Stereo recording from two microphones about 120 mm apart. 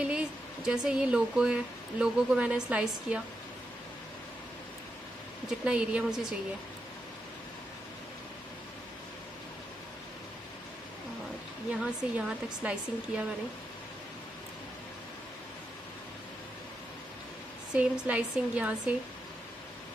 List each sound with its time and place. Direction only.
0.0 s speech: 10° right (ahead or behind)
5.7 s speech: 10° right (ahead or behind)
11.8 s speech: 5° right (ahead or behind)
17.7 s speech: 10° right (ahead or behind)